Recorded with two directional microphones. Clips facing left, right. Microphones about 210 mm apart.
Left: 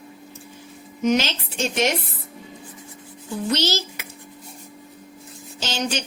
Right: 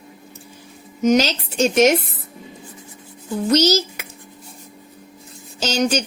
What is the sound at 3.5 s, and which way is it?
Speech, 40° right (ahead or behind).